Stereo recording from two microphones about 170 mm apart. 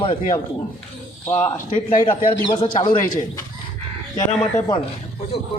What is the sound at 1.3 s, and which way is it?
Speech, 15° left (ahead or behind).